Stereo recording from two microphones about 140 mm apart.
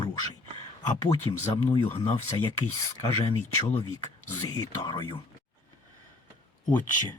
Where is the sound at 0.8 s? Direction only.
30° left (ahead or behind).